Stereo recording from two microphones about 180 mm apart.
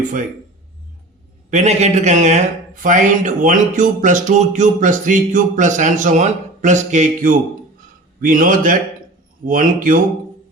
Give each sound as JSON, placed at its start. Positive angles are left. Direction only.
{"t": 1.5, "sound": "a man's voice", "side_deg": -40}